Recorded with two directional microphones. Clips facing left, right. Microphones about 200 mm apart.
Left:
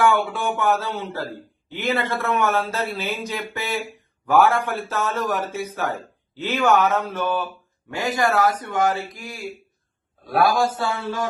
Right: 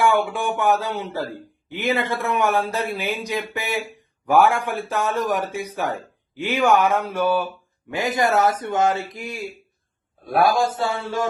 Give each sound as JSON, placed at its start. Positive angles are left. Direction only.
{"t": 0.0, "sound": "a man's voice", "side_deg": -15}